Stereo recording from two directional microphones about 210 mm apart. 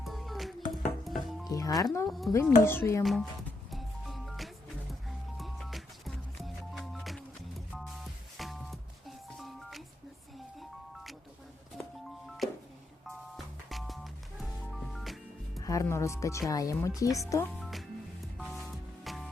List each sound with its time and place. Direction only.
0.0 s music: centre (ahead or behind)
1.5 s music: 15° left (ahead or behind)
2.0 s speech: centre (ahead or behind)
2.3 s speech: 10° left (ahead or behind)
3.0 s speech: centre (ahead or behind)
3.7 s music: centre (ahead or behind)
13.1 s music: centre (ahead or behind)
15.5 s music: 15° left (ahead or behind)
16.5 s speech: 15° left (ahead or behind)
17.6 s music: centre (ahead or behind)